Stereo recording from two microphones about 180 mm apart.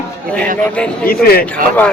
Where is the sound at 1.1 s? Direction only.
55° left (ahead or behind).